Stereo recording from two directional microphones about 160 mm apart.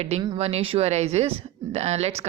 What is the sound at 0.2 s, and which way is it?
Speech, 30° right (ahead or behind).